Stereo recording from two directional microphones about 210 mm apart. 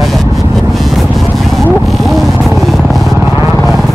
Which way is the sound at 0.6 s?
Centre (ahead or behind).